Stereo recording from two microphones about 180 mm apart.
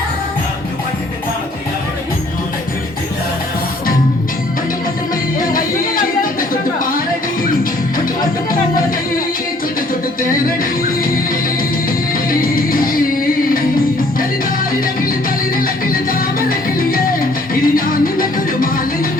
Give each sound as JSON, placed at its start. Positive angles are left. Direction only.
{"t": 12.3, "sound": "music", "side_deg": 55}
{"t": 15.5, "sound": "music", "side_deg": 50}